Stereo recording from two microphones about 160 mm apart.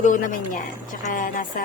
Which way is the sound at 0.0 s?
55° left (ahead or behind).